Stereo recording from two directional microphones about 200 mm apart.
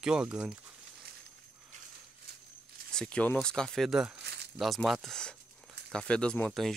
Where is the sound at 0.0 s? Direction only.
5° right (ahead or behind).